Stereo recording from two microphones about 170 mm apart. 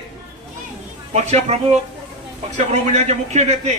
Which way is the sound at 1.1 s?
40° right (ahead or behind).